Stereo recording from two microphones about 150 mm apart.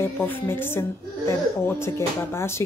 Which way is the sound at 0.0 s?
15° left (ahead or behind).